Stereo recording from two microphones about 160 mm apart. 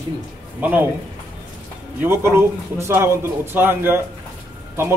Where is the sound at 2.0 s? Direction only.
15° right (ahead or behind).